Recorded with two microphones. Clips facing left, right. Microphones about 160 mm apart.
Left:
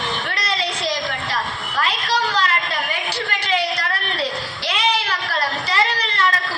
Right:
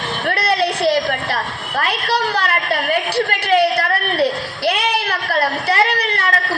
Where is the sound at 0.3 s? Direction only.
60° right (ahead or behind).